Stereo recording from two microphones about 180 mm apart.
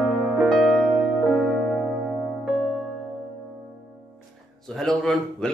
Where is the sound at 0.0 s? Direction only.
Centre (ahead or behind).